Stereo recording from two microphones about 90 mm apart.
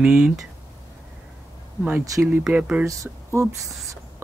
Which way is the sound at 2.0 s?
40° right (ahead or behind).